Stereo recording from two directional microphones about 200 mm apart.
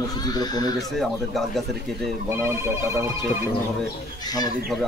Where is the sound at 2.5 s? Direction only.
15° right (ahead or behind).